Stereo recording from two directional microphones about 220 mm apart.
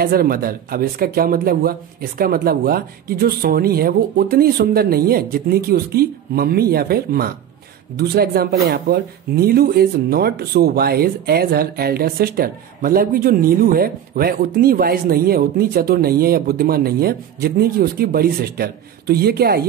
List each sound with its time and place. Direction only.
0.0 s speech: 45° right (ahead or behind)